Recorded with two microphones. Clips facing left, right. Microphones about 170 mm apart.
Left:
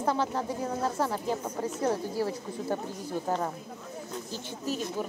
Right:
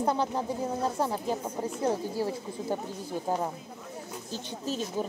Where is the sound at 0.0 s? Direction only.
15° right (ahead or behind).